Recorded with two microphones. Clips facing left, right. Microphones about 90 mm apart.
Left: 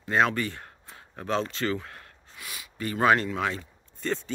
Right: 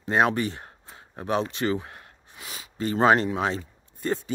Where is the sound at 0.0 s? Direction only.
20° right (ahead or behind).